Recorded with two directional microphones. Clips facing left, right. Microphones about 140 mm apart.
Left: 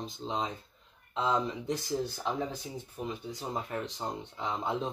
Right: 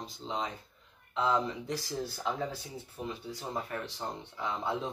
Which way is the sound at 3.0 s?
20° left (ahead or behind).